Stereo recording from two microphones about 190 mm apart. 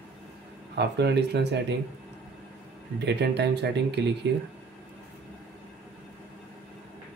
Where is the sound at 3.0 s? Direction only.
60° right (ahead or behind).